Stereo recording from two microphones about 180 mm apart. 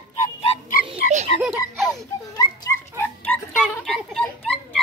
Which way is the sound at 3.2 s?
5° left (ahead or behind).